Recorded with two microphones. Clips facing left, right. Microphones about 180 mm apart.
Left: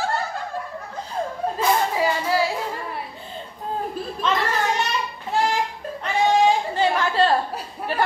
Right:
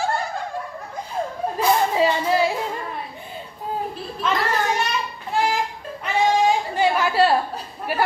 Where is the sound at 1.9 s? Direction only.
25° right (ahead or behind).